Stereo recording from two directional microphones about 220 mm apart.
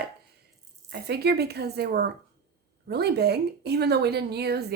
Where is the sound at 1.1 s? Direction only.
45° right (ahead or behind).